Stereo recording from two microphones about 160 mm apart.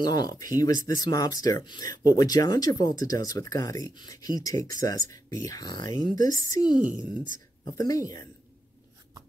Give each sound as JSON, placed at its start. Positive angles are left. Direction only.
{"t": 0.0, "sound": "speech", "side_deg": 25}
{"t": 6.8, "sound": "speech", "side_deg": -10}
{"t": 7.7, "sound": "speech", "side_deg": 20}